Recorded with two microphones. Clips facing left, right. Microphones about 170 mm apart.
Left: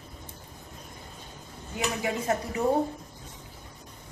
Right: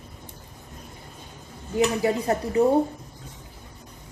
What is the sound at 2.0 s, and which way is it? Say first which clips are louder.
Speech: right 5 dB; 35° right (ahead or behind).